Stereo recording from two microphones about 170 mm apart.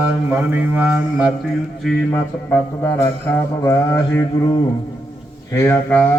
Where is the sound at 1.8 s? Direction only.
10° left (ahead or behind).